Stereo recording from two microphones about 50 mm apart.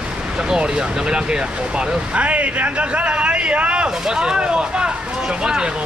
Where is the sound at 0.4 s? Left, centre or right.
Centre.